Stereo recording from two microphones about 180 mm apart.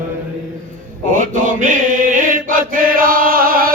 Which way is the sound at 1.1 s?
45° right (ahead or behind).